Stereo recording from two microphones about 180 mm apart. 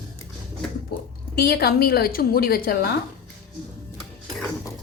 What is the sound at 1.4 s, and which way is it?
A woman's voice, 60° left (ahead or behind).